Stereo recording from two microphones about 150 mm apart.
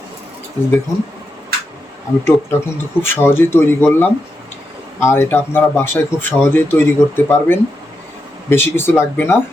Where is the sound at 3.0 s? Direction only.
15° left (ahead or behind).